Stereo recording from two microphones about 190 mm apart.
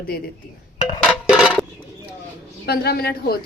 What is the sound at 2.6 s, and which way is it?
Speech, 55° left (ahead or behind).